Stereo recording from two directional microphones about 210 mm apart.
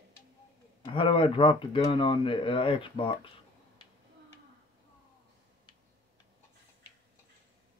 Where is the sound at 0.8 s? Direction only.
25° left (ahead or behind).